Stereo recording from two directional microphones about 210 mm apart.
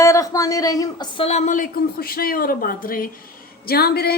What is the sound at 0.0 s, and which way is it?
A woman's voice, 15° left (ahead or behind).